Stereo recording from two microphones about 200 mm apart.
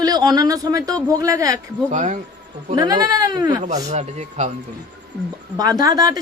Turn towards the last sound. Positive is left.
turn(degrees=-20)  # may be behind; listen again after turning